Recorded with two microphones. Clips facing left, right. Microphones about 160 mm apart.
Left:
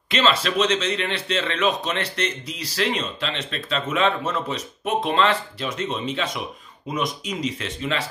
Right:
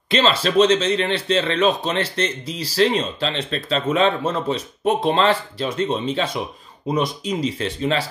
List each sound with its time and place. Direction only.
0.1 s speech: 30° right (ahead or behind)